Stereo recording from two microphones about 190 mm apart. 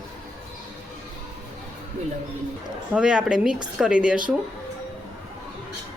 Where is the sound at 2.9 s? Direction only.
5° right (ahead or behind).